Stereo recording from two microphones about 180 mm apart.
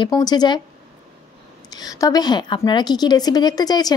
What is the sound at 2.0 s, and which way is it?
Speech, 20° left (ahead or behind).